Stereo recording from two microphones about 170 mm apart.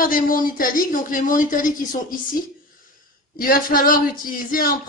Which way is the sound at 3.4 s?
55° left (ahead or behind).